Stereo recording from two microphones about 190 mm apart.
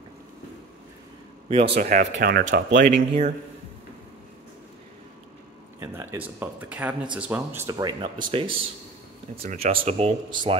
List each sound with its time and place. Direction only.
1.5 s speech: 30° right (ahead or behind)
1.8 s speech: 45° right (ahead or behind)
2.4 s speech: 70° right (ahead or behind)
3.1 s speech: 35° right (ahead or behind)
5.8 s speech: 10° right (ahead or behind)
7.7 s speech: 25° right (ahead or behind)